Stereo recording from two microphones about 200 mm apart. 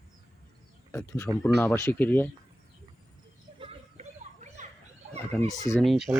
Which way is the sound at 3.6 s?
30° right (ahead or behind).